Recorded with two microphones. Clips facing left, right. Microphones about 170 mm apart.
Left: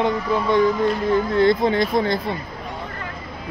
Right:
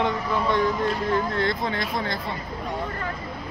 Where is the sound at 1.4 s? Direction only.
20° left (ahead or behind).